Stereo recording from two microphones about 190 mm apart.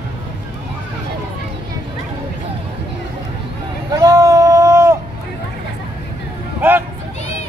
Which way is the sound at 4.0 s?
20° right (ahead or behind).